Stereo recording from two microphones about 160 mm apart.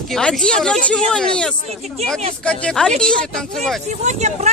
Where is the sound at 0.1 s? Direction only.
5° left (ahead or behind).